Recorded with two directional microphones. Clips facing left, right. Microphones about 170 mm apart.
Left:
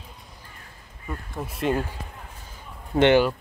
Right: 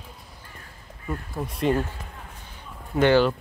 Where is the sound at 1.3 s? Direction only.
Centre (ahead or behind).